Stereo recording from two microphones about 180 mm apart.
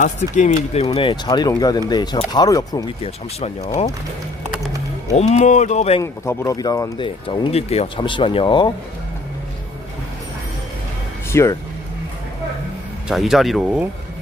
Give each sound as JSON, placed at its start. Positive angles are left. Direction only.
{"t": 0.0, "sound": "speech", "side_deg": 40}
{"t": 5.1, "sound": "speech", "side_deg": 40}
{"t": 6.0, "sound": "speech", "side_deg": 15}
{"t": 7.0, "sound": "speech", "side_deg": 30}
{"t": 11.3, "sound": "speech", "side_deg": 15}
{"t": 13.1, "sound": "speech", "side_deg": 0}